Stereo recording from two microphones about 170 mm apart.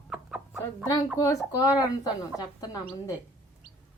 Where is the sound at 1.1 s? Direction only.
20° left (ahead or behind).